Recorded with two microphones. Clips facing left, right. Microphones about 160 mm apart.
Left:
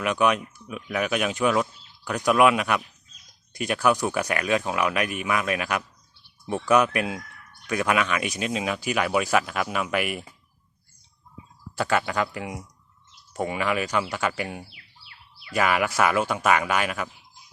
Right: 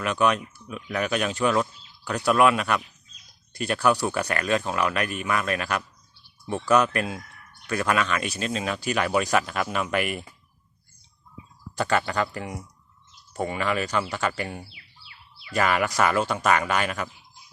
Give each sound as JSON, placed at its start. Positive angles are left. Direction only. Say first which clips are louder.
{"t": 0.0, "sound": "speech", "louder": "left 1 dB", "side_deg": 10}
{"t": 11.8, "sound": "speech", "louder": "even", "side_deg": 10}
{"t": 14.7, "sound": "a sound", "louder": "even", "side_deg": 55}
{"t": 15.5, "sound": "speech", "louder": "even", "side_deg": 5}